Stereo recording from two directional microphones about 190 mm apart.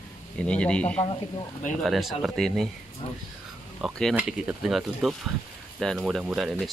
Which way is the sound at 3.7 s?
Centre (ahead or behind).